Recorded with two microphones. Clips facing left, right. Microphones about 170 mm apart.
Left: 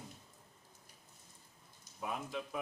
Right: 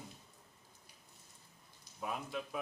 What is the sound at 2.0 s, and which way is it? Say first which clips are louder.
Mantra: even; centre (ahead or behind).